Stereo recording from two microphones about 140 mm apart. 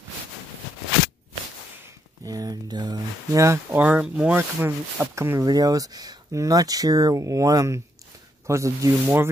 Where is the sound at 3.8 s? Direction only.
10° right (ahead or behind).